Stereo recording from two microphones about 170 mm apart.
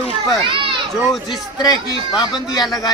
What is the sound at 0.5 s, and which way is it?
Children playing, 30° right (ahead or behind).